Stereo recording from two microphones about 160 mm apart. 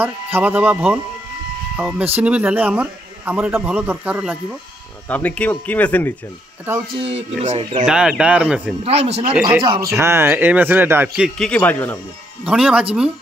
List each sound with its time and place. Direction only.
0.0 s a man's voice: 10° right (ahead or behind)
5.0 s speech: 10° left (ahead or behind)
7.2 s speech: 45° right (ahead or behind)
7.8 s speech: 5° right (ahead or behind)
8.8 s speech: 40° right (ahead or behind)
9.9 s a man's voice: 15° right (ahead or behind)
11.2 s speech: 5° left (ahead or behind)
12.4 s speech: 5° right (ahead or behind)